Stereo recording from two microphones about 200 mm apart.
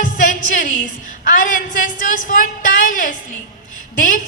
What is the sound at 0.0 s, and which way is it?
Music, 40° left (ahead or behind).